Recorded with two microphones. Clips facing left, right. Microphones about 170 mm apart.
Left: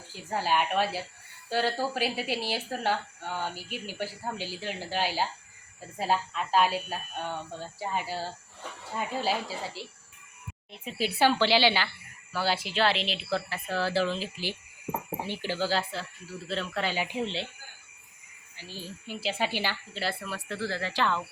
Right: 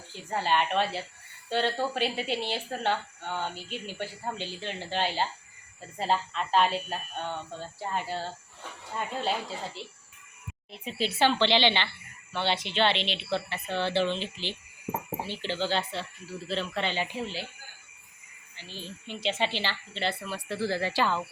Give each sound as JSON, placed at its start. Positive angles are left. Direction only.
{"t": 0.1, "sound": "a woman's voice", "side_deg": 5}
{"t": 18.5, "sound": "a woman's voice", "side_deg": 10}
{"t": 20.6, "sound": "speech", "side_deg": -15}